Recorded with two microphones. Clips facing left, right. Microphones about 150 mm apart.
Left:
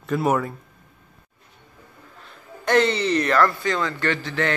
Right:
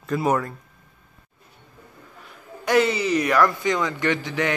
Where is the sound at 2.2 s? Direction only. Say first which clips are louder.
Left 1 dB; 10° right (ahead or behind).